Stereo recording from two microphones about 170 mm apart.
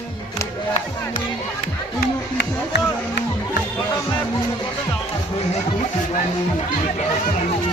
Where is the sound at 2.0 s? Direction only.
75° left (ahead or behind).